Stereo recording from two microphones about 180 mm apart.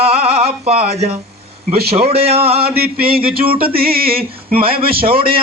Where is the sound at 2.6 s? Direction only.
60° right (ahead or behind).